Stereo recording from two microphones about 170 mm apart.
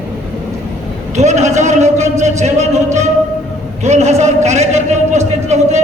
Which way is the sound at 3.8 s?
40° right (ahead or behind).